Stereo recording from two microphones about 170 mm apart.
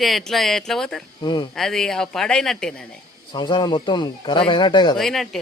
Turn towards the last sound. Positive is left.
turn(degrees=0)  # may be behind; listen again after turning